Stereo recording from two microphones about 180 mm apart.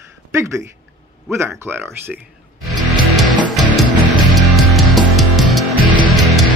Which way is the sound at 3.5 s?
Centre (ahead or behind).